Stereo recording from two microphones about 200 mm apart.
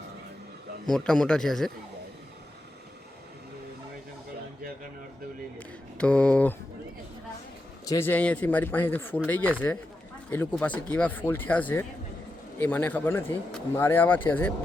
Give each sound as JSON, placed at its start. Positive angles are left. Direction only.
{"t": 0.9, "sound": "a man's voice", "side_deg": 5}
{"t": 5.5, "sound": "speech", "side_deg": 5}
{"t": 7.9, "sound": "speech", "side_deg": 10}